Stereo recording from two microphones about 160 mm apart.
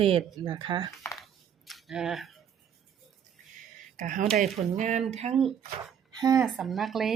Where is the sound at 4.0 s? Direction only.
55° right (ahead or behind).